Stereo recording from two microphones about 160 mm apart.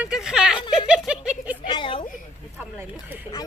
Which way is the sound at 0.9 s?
5° right (ahead or behind).